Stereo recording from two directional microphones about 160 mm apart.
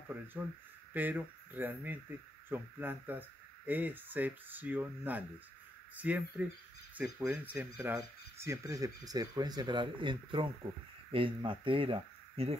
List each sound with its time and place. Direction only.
0.3 s speech: 5° right (ahead or behind); by 12.5 s 35° right (ahead or behind)